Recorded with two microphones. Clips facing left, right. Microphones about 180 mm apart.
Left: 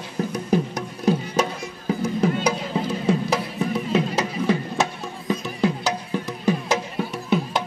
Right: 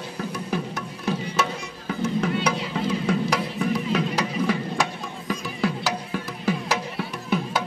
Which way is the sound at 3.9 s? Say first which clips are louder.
Left 2 dB; 25° left (ahead or behind).